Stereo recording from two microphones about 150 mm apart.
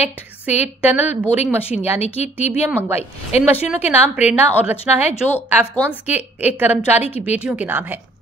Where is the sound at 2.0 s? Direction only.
45° left (ahead or behind).